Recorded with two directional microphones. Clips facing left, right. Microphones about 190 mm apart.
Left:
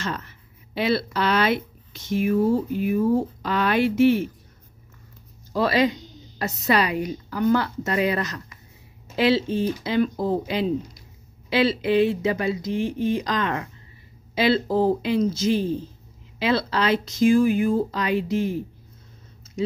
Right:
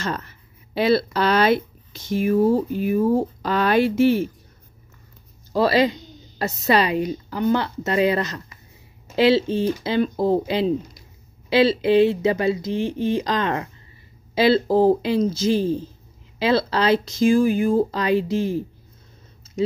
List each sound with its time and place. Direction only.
0.0 s speech: 40° right (ahead or behind)
5.5 s a woman's voice: 30° right (ahead or behind)